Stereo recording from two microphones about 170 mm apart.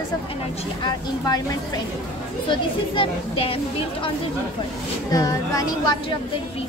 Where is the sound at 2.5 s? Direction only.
30° left (ahead or behind).